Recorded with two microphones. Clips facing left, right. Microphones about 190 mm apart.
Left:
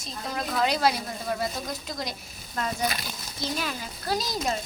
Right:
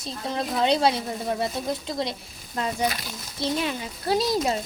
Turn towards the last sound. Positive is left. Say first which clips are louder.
# right 5 dB
turn(degrees=-30)  # may be behind; listen again after turning